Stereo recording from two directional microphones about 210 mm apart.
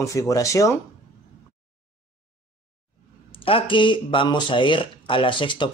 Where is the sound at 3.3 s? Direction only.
25° left (ahead or behind).